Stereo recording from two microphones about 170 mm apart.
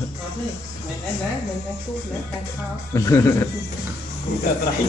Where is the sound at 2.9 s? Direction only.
20° left (ahead or behind).